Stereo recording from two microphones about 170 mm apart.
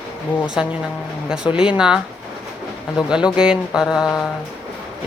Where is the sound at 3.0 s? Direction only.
5° right (ahead or behind).